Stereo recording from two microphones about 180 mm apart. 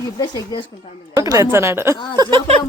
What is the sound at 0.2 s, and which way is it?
Speech, 25° left (ahead or behind).